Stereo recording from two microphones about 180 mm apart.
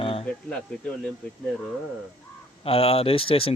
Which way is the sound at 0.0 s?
30° left (ahead or behind).